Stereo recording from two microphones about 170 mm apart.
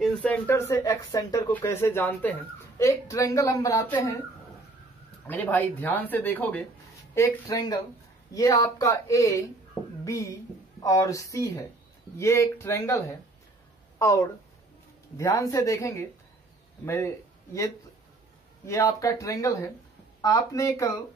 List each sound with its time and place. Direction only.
0.0 s a woman's voice: 10° left (ahead or behind)
5.2 s a woman's voice: 10° left (ahead or behind)
18.7 s a woman's voice: 15° left (ahead or behind)